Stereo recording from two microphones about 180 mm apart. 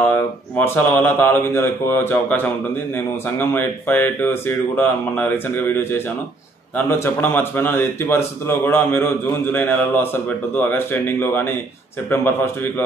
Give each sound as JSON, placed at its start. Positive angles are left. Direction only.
{"t": 0.1, "sound": "speech", "side_deg": 10}